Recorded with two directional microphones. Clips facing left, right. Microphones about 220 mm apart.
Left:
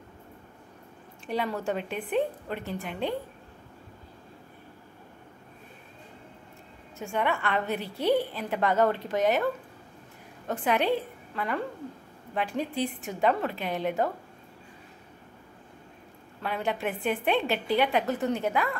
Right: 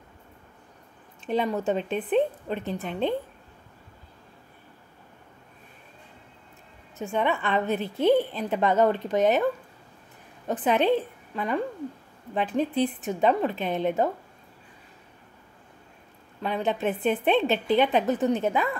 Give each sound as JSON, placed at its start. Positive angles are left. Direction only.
{"t": 1.2, "sound": "a woman's voice", "side_deg": -20}
{"t": 7.0, "sound": "a woman's voice", "side_deg": -20}
{"t": 10.5, "sound": "a woman's voice", "side_deg": -20}
{"t": 16.4, "sound": "a woman's voice", "side_deg": -20}